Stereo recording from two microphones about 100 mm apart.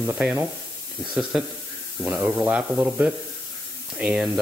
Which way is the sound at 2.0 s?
25° right (ahead or behind).